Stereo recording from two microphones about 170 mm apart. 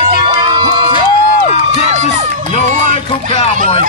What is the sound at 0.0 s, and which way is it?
Crowd, 30° right (ahead or behind).